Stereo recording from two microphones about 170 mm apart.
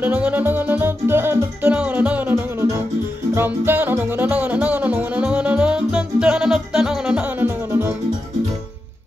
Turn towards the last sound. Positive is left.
turn(degrees=-15)  # may be behind; listen again after turning